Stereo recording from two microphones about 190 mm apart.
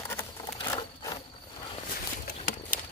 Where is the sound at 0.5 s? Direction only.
20° left (ahead or behind).